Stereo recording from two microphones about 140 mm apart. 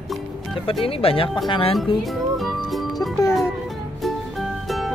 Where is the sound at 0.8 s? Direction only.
40° left (ahead or behind).